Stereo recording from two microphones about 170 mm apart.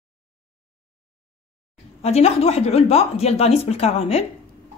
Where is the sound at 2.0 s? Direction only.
40° left (ahead or behind).